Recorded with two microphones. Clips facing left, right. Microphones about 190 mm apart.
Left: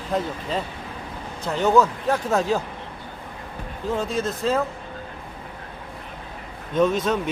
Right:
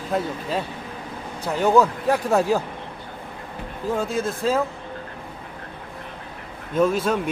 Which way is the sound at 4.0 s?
10° right (ahead or behind).